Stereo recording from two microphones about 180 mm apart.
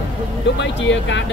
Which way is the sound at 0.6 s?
90° left.